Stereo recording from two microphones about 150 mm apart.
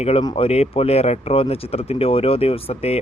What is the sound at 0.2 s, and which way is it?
Speech, 35° left (ahead or behind).